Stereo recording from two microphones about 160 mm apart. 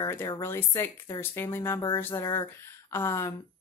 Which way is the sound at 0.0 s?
15° left (ahead or behind).